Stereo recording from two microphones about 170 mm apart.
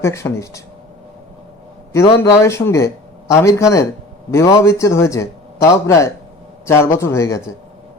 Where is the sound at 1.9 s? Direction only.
15° left (ahead or behind).